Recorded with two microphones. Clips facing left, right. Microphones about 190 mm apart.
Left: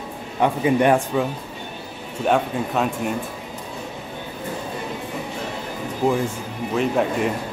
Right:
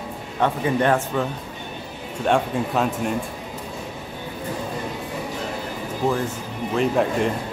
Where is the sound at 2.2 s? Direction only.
Centre (ahead or behind).